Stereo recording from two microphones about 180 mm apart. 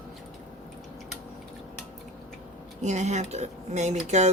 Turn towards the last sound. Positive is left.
turn(degrees=-40)  # may be behind; listen again after turning